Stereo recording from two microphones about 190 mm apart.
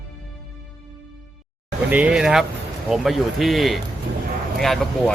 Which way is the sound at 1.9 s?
5° right (ahead or behind).